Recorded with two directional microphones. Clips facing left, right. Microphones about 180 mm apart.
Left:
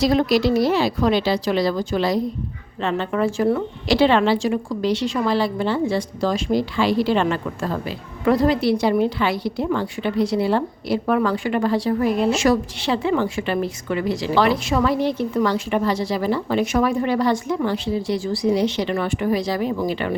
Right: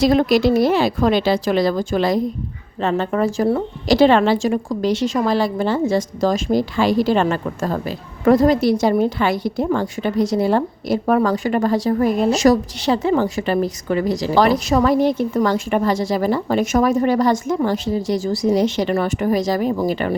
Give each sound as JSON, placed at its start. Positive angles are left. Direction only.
{"t": 0.0, "sound": "a woman's voice", "side_deg": -50}